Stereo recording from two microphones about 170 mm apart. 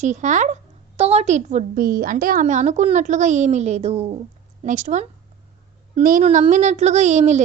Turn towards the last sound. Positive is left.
turn(degrees=-45)  # may be behind; listen again after turning